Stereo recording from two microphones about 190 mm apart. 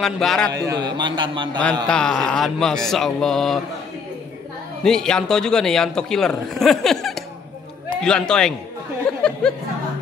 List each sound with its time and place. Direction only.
0.0 s a man's voice: centre (ahead or behind)
0.5 s a man's voice: 20° right (ahead or behind)
1.9 s a man's voice: 5° left (ahead or behind)
4.8 s a man's voice: 5° left (ahead or behind)
9.1 s a sound: 5° left (ahead or behind)